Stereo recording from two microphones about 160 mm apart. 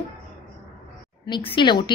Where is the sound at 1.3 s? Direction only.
30° left (ahead or behind).